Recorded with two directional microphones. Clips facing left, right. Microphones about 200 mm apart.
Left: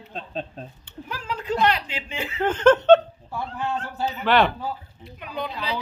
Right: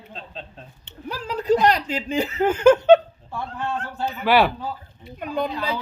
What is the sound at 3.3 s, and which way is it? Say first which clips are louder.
Speech: even; 5° left (ahead or behind).